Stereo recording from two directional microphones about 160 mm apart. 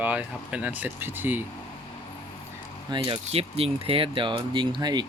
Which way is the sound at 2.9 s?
30° right (ahead or behind).